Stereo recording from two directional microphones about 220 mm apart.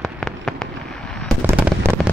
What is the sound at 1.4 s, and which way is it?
Fireworks, 10° right (ahead or behind).